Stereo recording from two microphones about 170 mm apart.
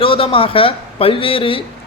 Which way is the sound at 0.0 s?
30° left (ahead or behind).